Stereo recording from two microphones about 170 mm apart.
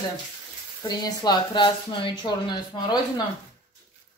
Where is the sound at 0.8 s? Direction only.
25° left (ahead or behind).